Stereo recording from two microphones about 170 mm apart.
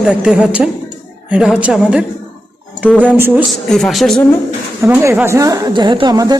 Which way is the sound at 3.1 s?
15° right (ahead or behind).